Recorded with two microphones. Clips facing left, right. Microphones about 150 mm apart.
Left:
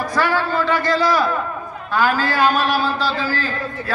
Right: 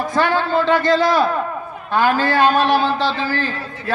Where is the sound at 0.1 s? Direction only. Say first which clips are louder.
Right 2 dB; 20° right (ahead or behind).